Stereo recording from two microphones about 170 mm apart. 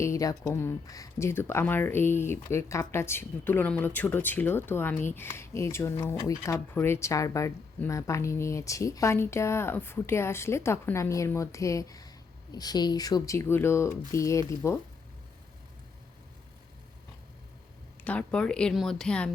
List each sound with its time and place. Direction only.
0.0 s speech: 20° left (ahead or behind)
18.0 s speech: 10° left (ahead or behind)